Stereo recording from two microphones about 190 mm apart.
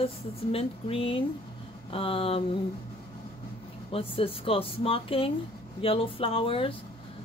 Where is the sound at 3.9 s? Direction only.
30° left (ahead or behind).